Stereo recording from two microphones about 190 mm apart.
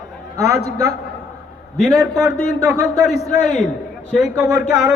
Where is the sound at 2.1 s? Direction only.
15° right (ahead or behind).